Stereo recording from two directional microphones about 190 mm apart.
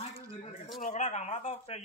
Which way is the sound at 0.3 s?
35° left (ahead or behind).